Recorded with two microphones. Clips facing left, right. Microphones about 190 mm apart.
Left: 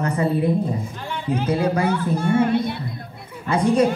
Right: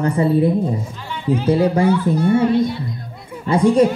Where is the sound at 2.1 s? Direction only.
50° left (ahead or behind).